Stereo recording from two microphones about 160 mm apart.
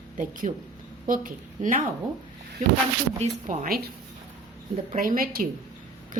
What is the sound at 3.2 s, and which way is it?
Speech, 50° right (ahead or behind).